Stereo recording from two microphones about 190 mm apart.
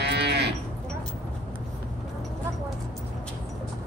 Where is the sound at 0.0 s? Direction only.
60° right (ahead or behind).